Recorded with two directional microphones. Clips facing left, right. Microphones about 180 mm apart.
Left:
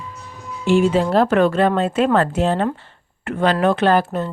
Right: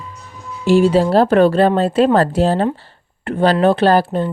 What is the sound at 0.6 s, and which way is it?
Speech, 35° right (ahead or behind).